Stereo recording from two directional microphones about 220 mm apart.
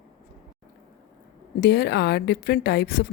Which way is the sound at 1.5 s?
45° left (ahead or behind).